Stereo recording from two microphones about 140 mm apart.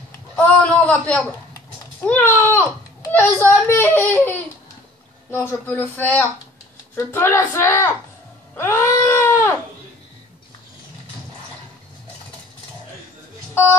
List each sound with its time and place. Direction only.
0.4 s a sound: 10° left (ahead or behind)
2.0 s a child's voice: 15° left (ahead or behind)
8.5 s baby cry: 20° left (ahead or behind)